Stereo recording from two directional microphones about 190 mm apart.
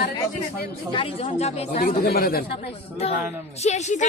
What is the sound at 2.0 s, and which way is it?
Speech, 55° left (ahead or behind).